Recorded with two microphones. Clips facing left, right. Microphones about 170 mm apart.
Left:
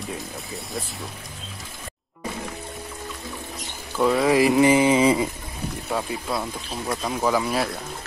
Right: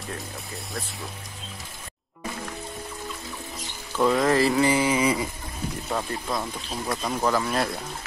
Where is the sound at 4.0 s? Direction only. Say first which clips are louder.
Left 2 dB; 5° left (ahead or behind); by 5.3 s 25° left (ahead or behind).